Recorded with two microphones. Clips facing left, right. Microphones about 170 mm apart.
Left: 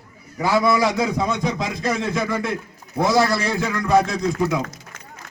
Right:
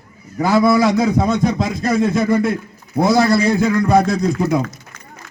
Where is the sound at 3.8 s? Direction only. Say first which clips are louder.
Even; 35° right (ahead or behind).